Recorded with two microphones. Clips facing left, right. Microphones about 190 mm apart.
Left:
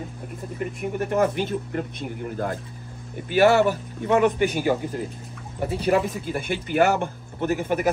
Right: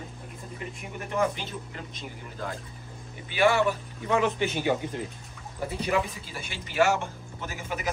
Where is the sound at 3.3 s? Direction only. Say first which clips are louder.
Left 6 dB; 40° left (ahead or behind).